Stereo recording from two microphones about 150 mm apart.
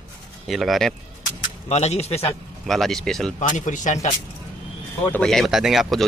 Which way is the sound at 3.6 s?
55° left (ahead or behind).